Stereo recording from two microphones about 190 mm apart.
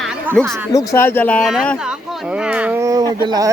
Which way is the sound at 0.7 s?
15° left (ahead or behind).